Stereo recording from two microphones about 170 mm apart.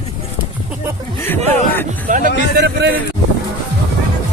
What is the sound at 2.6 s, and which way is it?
Speech, 80° right.